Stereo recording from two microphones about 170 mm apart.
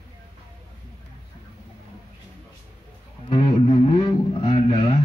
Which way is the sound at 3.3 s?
30° left (ahead or behind).